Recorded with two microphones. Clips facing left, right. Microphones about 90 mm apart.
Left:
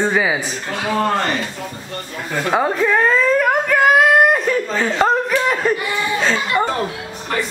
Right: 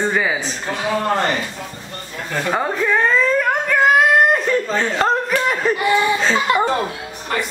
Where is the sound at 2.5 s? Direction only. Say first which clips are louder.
Left 3 dB; 5° left (ahead or behind).